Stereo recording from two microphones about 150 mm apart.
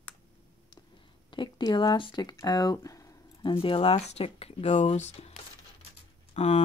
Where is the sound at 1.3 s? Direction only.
30° left (ahead or behind); by 5.3 s 45° left (ahead or behind).